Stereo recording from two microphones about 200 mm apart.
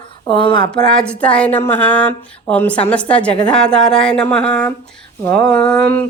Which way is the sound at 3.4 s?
5° left (ahead or behind).